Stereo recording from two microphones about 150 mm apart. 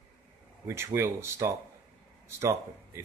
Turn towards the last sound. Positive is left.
turn(degrees=-20)  # may be behind; listen again after turning